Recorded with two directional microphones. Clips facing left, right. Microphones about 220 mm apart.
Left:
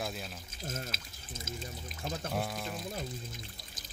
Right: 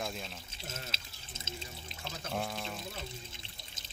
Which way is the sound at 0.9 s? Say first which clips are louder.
Left 4 dB; 25° right (ahead or behind).